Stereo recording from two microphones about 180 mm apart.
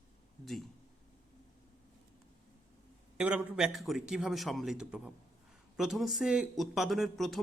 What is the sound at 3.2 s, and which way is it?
A man's voice, 5° right (ahead or behind).